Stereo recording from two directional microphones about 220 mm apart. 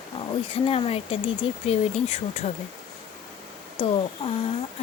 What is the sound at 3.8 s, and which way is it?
Speech, 25° left (ahead or behind).